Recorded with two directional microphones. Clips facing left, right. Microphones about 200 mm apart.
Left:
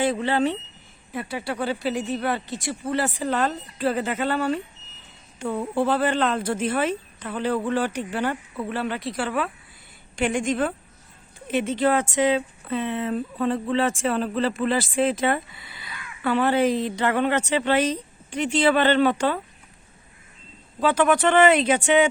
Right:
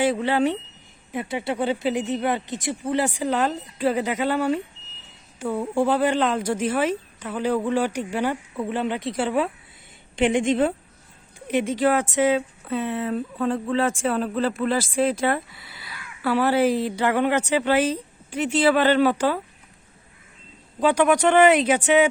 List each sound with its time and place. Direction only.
0.0 s speech: 10° right (ahead or behind); by 10.8 s 25° right (ahead or behind)
11.4 s speech: 10° right (ahead or behind)
20.8 s speech: 15° right (ahead or behind)